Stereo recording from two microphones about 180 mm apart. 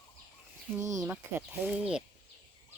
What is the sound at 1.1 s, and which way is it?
Speech, 10° right (ahead or behind).